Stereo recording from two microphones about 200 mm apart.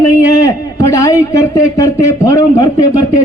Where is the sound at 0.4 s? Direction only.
15° left (ahead or behind).